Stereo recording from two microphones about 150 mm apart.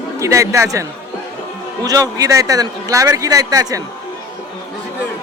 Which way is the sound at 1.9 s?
25° right (ahead or behind).